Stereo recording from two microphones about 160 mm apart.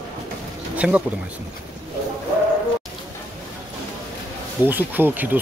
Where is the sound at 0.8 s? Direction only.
10° right (ahead or behind).